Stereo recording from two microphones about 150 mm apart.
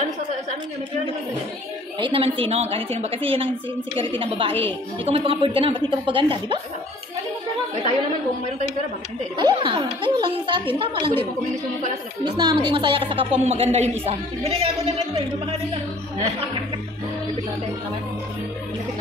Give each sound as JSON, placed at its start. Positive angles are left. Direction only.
{"t": 2.0, "sound": "a woman's voice", "side_deg": -35}
{"t": 9.4, "sound": "a woman's voice", "side_deg": -30}
{"t": 12.4, "sound": "a woman's voice", "side_deg": -30}